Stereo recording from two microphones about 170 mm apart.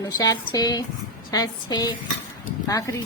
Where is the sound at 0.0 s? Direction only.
20° left (ahead or behind).